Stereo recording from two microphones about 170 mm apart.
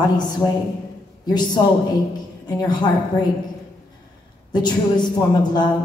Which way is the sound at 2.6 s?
25° left (ahead or behind).